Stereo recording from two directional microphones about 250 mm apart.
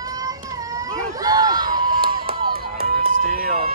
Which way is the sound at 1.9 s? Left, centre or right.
Right.